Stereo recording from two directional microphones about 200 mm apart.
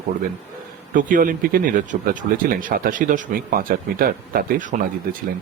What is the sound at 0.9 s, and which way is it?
Speech, 40° right (ahead or behind).